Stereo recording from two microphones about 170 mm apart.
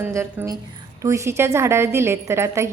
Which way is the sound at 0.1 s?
15° right (ahead or behind).